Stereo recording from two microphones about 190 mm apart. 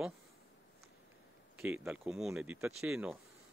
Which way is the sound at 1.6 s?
10° right (ahead or behind).